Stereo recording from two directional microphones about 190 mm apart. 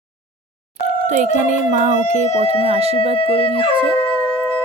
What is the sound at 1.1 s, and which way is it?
Speech, 40° right (ahead or behind).